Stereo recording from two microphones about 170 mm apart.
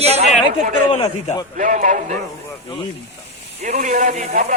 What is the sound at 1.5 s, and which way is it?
Speech, 50° right (ahead or behind).